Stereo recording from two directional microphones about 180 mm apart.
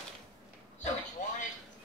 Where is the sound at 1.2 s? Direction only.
40° left (ahead or behind).